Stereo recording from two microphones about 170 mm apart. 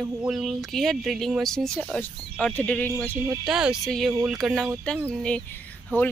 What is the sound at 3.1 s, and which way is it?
Speech, 15° right (ahead or behind).